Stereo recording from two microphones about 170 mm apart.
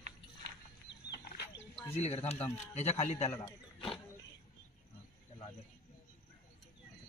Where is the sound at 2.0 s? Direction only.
35° left (ahead or behind).